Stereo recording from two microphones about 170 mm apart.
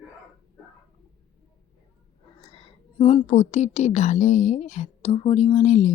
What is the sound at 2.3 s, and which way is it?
A woman's voice, 35° left (ahead or behind).